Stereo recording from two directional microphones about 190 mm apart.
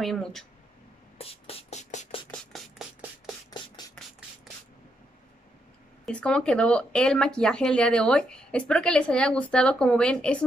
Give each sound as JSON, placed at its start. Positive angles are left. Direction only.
{"t": 0.0, "sound": "speech", "side_deg": 0}
{"t": 1.1, "sound": "beatboxing", "side_deg": 30}
{"t": 2.5, "sound": "a sound", "side_deg": 0}
{"t": 6.0, "sound": "speech", "side_deg": 5}